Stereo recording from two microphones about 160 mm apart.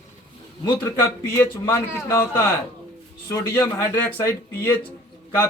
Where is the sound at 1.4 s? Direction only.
15° left (ahead or behind).